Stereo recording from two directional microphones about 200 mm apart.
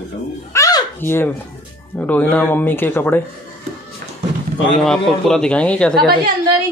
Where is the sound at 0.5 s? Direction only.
15° left (ahead or behind).